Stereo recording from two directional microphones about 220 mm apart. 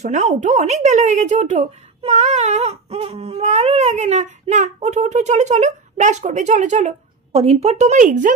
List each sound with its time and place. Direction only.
0.0 s speech: 30° right (ahead or behind)